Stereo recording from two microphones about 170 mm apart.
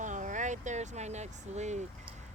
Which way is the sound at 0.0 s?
45° right (ahead or behind).